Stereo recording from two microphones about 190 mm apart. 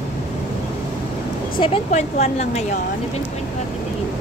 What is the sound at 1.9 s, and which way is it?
Speech, 35° left (ahead or behind).